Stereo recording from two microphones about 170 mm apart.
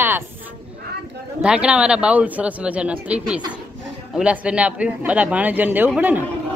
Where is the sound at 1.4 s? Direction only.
5° right (ahead or behind).